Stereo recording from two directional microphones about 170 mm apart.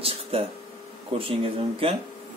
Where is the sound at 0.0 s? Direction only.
35° right (ahead or behind).